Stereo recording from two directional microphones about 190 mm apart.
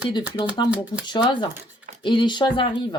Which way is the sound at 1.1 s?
25° left (ahead or behind).